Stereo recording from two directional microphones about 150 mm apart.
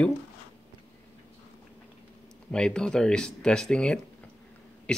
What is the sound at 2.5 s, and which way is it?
Speech, 5° left (ahead or behind).